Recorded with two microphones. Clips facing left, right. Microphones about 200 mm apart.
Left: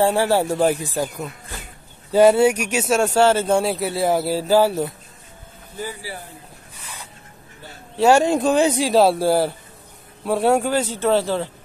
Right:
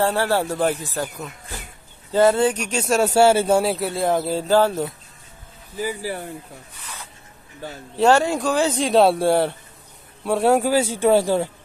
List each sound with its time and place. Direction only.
0.0 s speech: 10° left (ahead or behind)
8.0 s speech: 15° left (ahead or behind)
8.7 s a man's voice: centre (ahead or behind)